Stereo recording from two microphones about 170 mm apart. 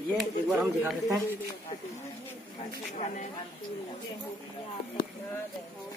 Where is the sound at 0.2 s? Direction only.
Centre (ahead or behind).